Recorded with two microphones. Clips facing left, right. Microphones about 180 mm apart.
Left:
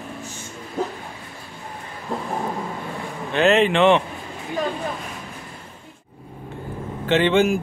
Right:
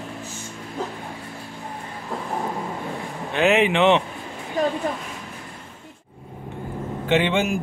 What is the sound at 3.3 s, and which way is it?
Speech, 15° right (ahead or behind).